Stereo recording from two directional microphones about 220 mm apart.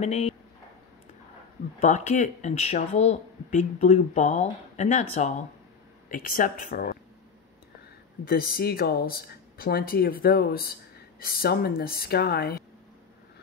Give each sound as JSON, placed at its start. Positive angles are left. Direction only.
{"t": 0.0, "sound": "speech", "side_deg": 30}
{"t": 1.8, "sound": "speech", "side_deg": 35}
{"t": 8.3, "sound": "speech", "side_deg": 40}